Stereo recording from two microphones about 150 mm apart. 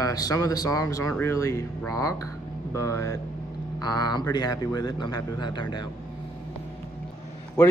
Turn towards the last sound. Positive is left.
turn(degrees=15)  # may be behind; listen again after turning